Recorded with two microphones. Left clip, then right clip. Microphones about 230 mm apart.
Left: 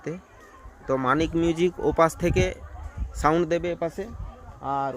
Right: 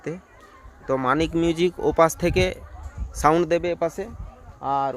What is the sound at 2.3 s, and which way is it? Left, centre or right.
Speech, centre.